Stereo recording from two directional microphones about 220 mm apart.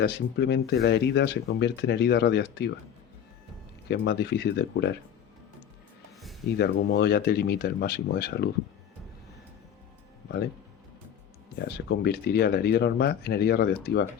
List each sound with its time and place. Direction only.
0.0 s speech: 50° left (ahead or behind)
3.8 s speech: 50° left (ahead or behind)
6.6 s speech: 50° left (ahead or behind)
11.5 s speech: 45° left (ahead or behind)